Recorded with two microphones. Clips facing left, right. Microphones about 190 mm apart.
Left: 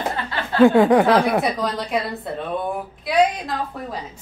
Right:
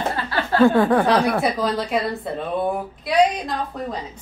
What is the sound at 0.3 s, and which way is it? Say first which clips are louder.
Chuckle: left 2 dB; 20° left (ahead or behind).